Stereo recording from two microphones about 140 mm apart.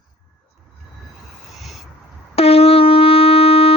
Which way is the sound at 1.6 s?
Centre (ahead or behind).